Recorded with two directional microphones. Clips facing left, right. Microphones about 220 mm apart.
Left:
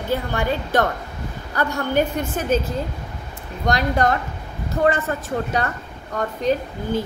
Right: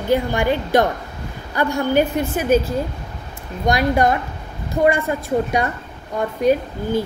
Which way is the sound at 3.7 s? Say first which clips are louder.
Right 3 dB; 10° right (ahead or behind).